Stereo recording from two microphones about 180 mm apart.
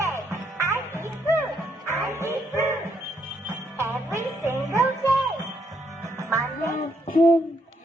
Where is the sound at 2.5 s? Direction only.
15° right (ahead or behind).